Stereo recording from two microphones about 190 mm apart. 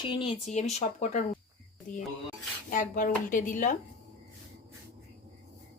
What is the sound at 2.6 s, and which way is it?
Speech, 45° left (ahead or behind).